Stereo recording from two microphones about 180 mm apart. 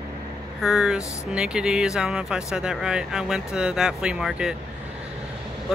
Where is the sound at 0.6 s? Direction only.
5° right (ahead or behind).